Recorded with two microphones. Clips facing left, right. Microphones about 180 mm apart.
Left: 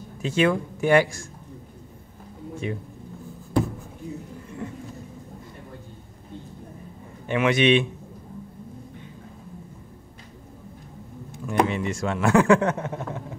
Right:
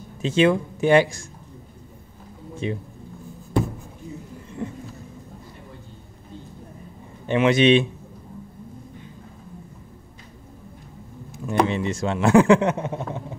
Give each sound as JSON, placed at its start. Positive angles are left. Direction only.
{"t": 0.2, "sound": "speech", "side_deg": -25}
{"t": 2.6, "sound": "speech", "side_deg": -25}
{"t": 7.2, "sound": "a man's voice", "side_deg": -30}
{"t": 11.4, "sound": "speech", "side_deg": -25}